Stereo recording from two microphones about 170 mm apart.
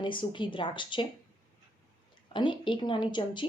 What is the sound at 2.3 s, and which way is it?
A woman's voice, 30° left (ahead or behind).